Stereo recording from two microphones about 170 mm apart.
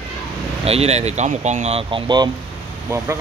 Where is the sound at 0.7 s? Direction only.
40° right (ahead or behind).